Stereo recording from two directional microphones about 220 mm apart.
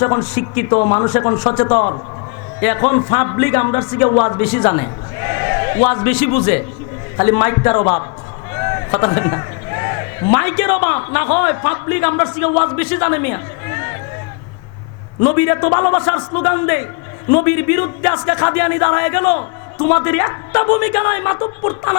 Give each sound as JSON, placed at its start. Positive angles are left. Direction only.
{"t": 0.0, "sound": "speech", "side_deg": 15}
{"t": 15.2, "sound": "speech", "side_deg": 15}